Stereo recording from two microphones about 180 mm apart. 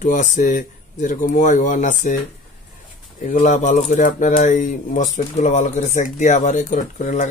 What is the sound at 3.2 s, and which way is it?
Speech, 45° left (ahead or behind).